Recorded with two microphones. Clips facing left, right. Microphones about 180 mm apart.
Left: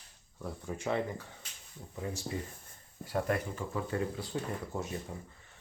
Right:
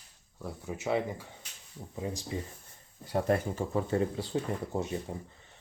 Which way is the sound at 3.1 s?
30° right (ahead or behind).